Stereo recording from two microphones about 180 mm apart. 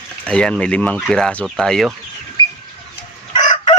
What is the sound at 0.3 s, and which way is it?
Speech, 5° left (ahead or behind).